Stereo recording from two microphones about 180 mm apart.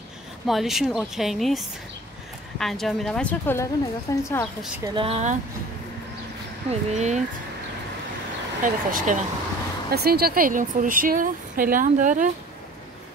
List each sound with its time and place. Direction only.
0.5 s a woman's voice: centre (ahead or behind); by 4.5 s 15° left (ahead or behind)
4.8 s speech: 30° right (ahead or behind)
6.7 s speech: 40° right (ahead or behind)
8.6 s a woman's voice: 45° right (ahead or behind)
9.8 s a woman's voice: 60° right (ahead or behind)